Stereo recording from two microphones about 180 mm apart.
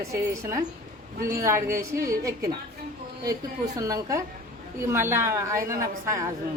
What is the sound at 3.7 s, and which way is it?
A man's voice, 20° right (ahead or behind).